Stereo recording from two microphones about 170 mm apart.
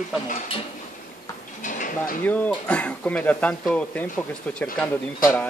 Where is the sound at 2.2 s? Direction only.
10° left (ahead or behind).